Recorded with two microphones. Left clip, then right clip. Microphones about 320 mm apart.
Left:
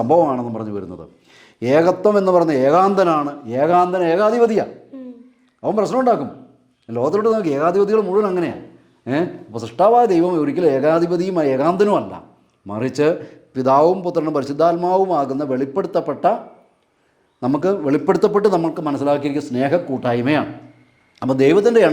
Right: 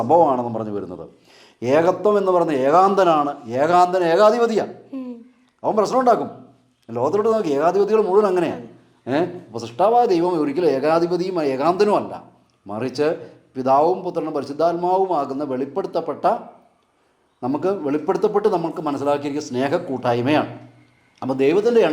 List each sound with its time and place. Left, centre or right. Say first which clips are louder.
0.1 s a man's voice: right 1 dB; left
4.9 s a sound: right 4 dB; right
5.6 s a man's voice: even; left
9.0 s a man's voice: even; left
17.4 s a man's voice: left 3 dB; left